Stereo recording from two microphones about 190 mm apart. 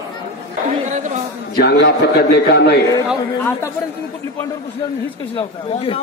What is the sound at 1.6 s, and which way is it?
A man's voice, 60° left (ahead or behind).